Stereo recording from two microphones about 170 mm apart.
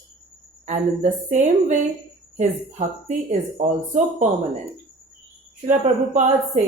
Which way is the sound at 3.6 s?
45° right (ahead or behind).